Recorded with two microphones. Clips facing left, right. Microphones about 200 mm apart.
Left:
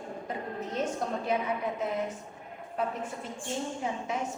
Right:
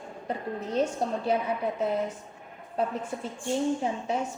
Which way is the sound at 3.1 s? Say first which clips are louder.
Right 6 dB; 30° right (ahead or behind).